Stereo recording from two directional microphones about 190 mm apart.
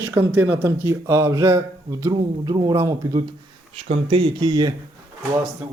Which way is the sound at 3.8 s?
30° right (ahead or behind).